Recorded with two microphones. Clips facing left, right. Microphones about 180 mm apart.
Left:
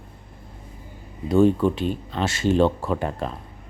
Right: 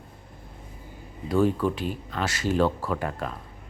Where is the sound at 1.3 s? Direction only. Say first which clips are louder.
Left 5 dB; 25° left (ahead or behind).